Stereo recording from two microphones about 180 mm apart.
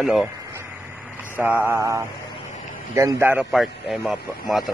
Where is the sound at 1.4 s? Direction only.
10° right (ahead or behind).